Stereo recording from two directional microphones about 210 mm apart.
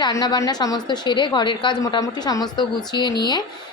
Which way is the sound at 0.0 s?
20° left (ahead or behind).